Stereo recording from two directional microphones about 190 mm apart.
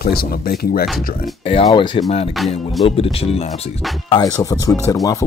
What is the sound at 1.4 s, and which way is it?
Speech, 30° left (ahead or behind).